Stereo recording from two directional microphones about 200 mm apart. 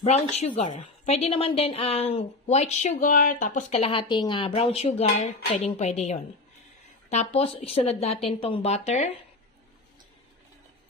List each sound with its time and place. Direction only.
0.0 s a woman's voice: 35° left (ahead or behind)